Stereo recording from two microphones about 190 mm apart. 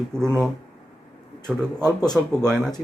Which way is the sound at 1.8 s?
20° left (ahead or behind).